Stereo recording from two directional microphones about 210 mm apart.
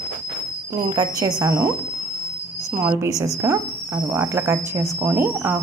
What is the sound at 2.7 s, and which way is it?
Speech, 10° right (ahead or behind).